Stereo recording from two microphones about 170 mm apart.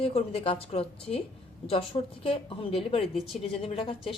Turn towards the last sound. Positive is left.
turn(degrees=30)  # may be behind; listen again after turning